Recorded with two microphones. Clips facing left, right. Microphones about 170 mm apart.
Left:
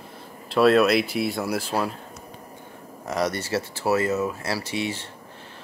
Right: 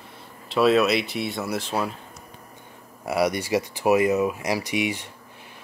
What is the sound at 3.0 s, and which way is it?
Speech, 10° right (ahead or behind).